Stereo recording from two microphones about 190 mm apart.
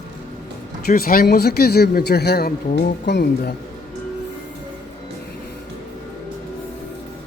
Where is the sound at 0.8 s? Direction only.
50° left (ahead or behind).